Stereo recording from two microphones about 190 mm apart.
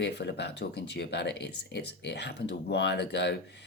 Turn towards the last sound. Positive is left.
turn(degrees=65)  # may be behind; listen again after turning